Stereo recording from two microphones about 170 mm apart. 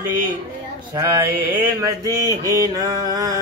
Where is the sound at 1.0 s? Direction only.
20° right (ahead or behind).